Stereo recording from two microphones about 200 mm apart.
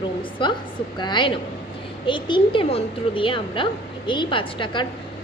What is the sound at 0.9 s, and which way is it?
A woman's voice, 20° left (ahead or behind).